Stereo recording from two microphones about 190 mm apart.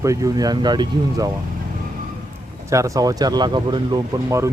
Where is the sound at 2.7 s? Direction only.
15° right (ahead or behind).